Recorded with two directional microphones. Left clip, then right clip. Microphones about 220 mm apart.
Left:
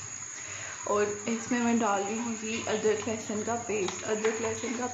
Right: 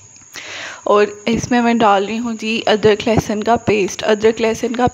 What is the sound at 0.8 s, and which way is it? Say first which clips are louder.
Speech: right 15 dB; 40° right (ahead or behind).